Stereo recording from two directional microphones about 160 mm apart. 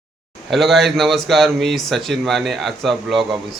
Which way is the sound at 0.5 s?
Centre (ahead or behind).